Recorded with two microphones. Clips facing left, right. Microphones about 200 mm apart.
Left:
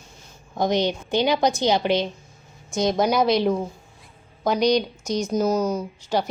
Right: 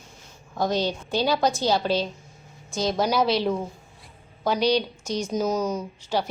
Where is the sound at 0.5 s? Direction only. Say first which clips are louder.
Left 3 dB; 20° left (ahead or behind).